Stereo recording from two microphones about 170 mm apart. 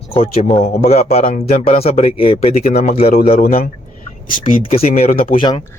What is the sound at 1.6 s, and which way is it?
Speech, 35° left (ahead or behind).